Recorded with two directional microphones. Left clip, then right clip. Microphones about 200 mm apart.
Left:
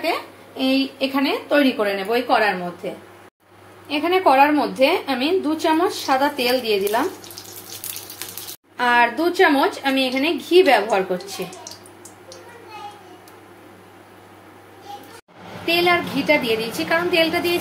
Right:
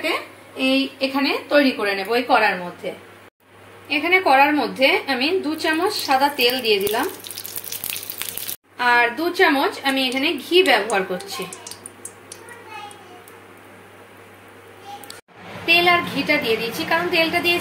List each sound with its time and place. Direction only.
0.0 s speech: 15° left (ahead or behind)
3.9 s speech: 10° left (ahead or behind)
8.7 s speech: 15° left (ahead or behind)
15.6 s speech: 15° left (ahead or behind)